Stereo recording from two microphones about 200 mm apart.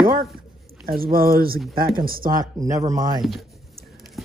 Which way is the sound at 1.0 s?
45° right (ahead or behind).